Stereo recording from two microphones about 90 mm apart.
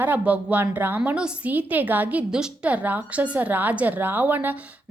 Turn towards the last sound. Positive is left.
turn(degrees=-20)  # may be behind; listen again after turning